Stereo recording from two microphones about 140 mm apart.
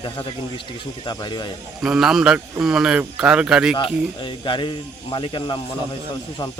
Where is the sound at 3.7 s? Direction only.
35° left (ahead or behind).